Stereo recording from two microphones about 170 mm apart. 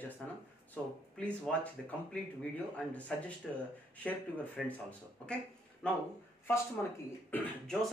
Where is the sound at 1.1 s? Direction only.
5° left (ahead or behind).